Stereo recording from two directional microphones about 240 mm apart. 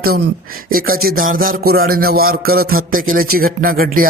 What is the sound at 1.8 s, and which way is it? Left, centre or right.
Speech, right.